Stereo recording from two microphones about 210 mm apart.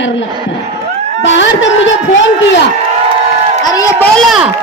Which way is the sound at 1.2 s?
60° left (ahead or behind).